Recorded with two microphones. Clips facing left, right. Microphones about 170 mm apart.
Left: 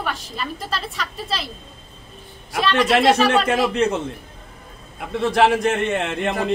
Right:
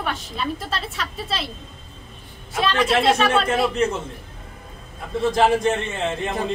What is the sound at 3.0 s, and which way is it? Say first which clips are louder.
Speech: left 2 dB; centre (ahead or behind).